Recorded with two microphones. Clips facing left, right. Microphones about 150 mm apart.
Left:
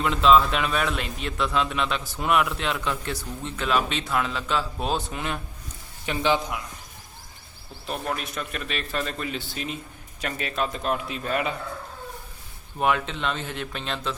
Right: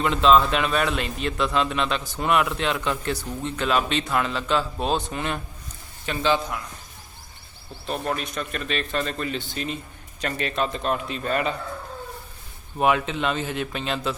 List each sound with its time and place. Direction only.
0.0 s a man's voice: centre (ahead or behind)
6.1 s a man's voice: 15° left (ahead or behind)
7.9 s a man's voice: centre (ahead or behind)
12.8 s a man's voice: 5° right (ahead or behind)